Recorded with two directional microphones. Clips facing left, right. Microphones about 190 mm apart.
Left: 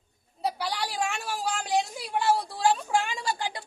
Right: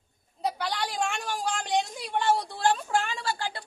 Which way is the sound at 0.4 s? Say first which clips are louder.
Even; 10° left (ahead or behind).